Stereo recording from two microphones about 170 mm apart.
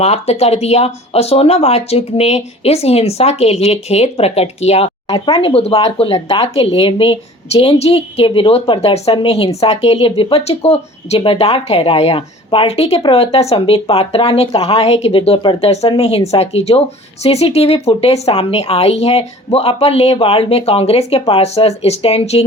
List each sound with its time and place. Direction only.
0.0 s speech: 40° left (ahead or behind)